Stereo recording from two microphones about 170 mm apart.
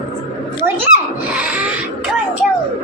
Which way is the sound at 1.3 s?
5° right (ahead or behind).